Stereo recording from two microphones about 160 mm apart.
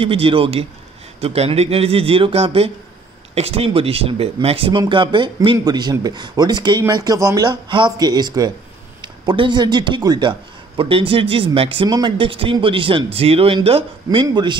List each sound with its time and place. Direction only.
0.0 s speech: 35° right (ahead or behind)